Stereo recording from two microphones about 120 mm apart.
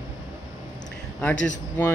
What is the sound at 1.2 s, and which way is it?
Speech, 10° left (ahead or behind).